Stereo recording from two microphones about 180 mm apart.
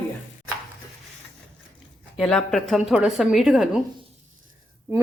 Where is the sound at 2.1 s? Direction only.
5° left (ahead or behind).